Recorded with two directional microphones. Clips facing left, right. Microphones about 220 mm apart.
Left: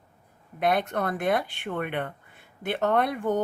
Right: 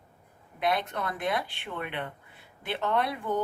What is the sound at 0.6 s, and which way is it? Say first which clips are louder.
Speech: left 4 dB; 50° left (ahead or behind).